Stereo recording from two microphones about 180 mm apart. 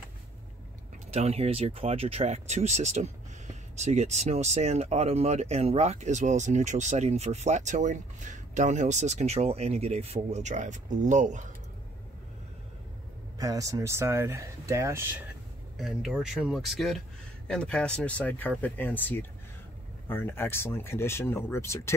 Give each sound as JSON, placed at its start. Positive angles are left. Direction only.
{"t": 1.1, "sound": "speech", "side_deg": -35}
{"t": 13.4, "sound": "speech", "side_deg": -20}
{"t": 15.8, "sound": "speech", "side_deg": -5}